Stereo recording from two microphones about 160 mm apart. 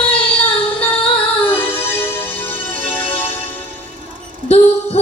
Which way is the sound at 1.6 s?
15° left (ahead or behind).